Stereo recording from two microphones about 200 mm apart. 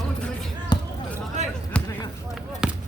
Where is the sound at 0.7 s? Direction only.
20° left (ahead or behind).